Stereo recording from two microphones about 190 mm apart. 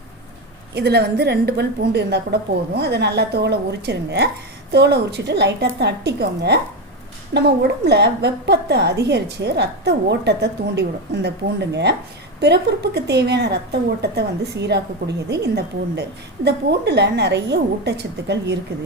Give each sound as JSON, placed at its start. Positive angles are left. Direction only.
{"t": 0.7, "sound": "a woman's voice", "side_deg": -60}